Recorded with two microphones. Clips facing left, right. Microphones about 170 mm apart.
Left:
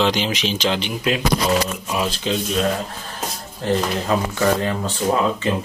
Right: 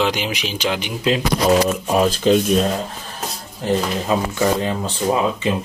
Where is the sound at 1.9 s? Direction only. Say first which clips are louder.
Right 7 dB; 45° right (ahead or behind).